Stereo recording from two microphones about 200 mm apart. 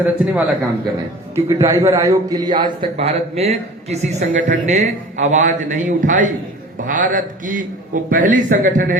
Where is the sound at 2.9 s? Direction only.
30° right (ahead or behind).